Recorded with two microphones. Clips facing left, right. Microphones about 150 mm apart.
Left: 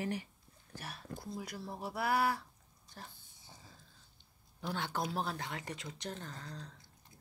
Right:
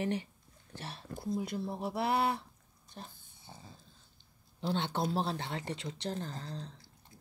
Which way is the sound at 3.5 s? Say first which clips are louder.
Right 6 dB; 65° right (ahead or behind).